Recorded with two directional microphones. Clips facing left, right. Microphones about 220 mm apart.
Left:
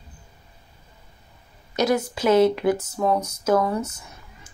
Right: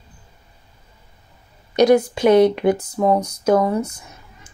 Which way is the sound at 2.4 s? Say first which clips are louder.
Right 3 dB; 20° right (ahead or behind).